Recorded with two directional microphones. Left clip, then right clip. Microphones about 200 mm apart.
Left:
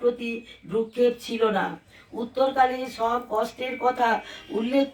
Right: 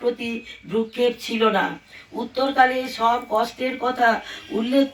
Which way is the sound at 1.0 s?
45° right (ahead or behind).